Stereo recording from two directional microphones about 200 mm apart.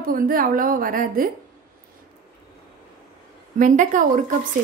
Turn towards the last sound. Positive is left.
turn(degrees=-40)  # may be behind; listen again after turning